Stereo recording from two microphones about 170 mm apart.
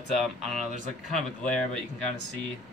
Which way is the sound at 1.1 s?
5° left (ahead or behind).